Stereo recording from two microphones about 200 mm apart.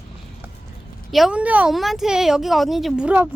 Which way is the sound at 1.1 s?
5° right (ahead or behind).